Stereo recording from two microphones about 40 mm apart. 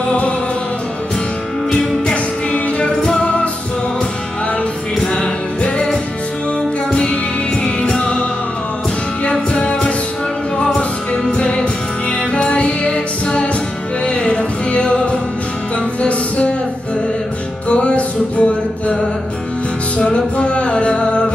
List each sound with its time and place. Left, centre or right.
1.7 s music: centre
5.0 s music: left
6.9 s music: left
17.6 s music: left
20.0 s music: left